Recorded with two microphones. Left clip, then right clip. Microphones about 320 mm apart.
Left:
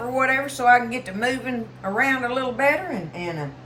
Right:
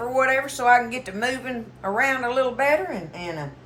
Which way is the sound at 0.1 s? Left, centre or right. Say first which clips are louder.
Even; centre.